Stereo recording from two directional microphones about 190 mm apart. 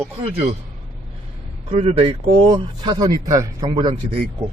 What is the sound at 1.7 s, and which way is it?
Speech, 30° right (ahead or behind).